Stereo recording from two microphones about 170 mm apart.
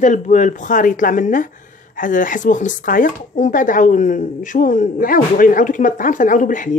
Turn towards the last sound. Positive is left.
turn(degrees=50)  # may be behind; listen again after turning